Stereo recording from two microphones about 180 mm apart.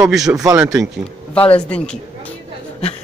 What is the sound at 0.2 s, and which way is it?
Speech, 20° right (ahead or behind).